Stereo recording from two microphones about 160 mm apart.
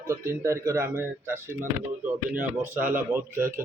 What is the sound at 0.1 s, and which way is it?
Speech, 20° right (ahead or behind).